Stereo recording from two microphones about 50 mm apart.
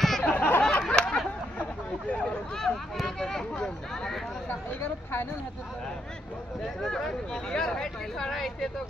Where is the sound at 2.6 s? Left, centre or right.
Centre.